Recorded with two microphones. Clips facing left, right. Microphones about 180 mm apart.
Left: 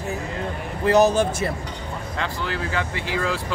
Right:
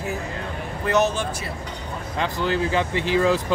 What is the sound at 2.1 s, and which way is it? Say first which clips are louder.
Speech: right 5 dB; 20° right (ahead or behind).